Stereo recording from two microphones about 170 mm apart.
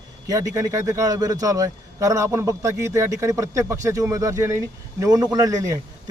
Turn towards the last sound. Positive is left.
turn(degrees=-20)  # may be behind; listen again after turning